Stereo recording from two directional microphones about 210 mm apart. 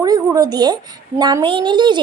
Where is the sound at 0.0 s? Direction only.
15° right (ahead or behind).